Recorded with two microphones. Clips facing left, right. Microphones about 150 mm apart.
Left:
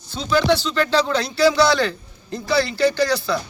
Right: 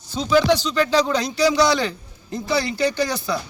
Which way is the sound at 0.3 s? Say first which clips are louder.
Right 1 dB; 10° right (ahead or behind).